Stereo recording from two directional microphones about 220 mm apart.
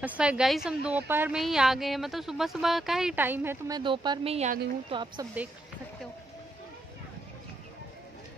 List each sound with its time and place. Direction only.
0.0 s a woman's voice: 5° right (ahead or behind)